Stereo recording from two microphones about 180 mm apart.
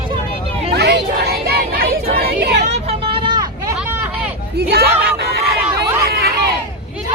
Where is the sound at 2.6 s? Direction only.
35° right (ahead or behind).